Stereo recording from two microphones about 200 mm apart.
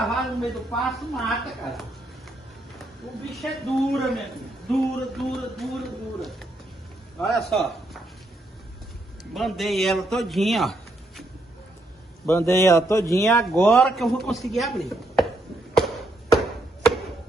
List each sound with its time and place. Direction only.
0.0 s a man's voice: centre (ahead or behind)
3.3 s a man's voice: centre (ahead or behind)
9.3 s a man's voice: centre (ahead or behind)
12.3 s a man's voice: 10° left (ahead or behind)
13.7 s a man's voice: centre (ahead or behind)
16.3 s chop: centre (ahead or behind)